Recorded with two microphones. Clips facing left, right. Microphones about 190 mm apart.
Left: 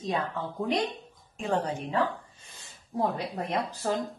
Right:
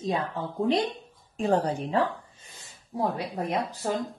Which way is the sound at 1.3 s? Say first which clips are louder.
Right 4 dB; 35° right (ahead or behind).